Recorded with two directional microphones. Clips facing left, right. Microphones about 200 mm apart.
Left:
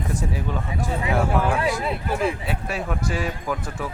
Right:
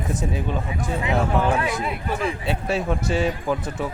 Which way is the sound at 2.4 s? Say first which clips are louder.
Right 4 dB; 25° right (ahead or behind).